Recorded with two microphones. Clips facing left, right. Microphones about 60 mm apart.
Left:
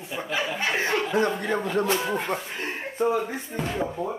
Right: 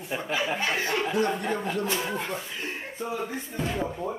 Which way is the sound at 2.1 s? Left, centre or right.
Left.